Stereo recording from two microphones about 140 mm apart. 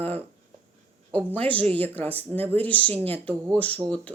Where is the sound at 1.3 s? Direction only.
10° left (ahead or behind).